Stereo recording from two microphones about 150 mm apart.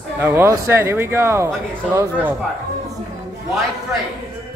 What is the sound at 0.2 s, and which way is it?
Speech, 15° right (ahead or behind).